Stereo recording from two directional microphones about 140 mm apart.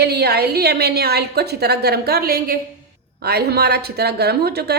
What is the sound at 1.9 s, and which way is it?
Speech, 90° right.